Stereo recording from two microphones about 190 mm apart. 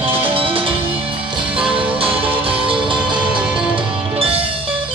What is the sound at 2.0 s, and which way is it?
Music, 30° right (ahead or behind).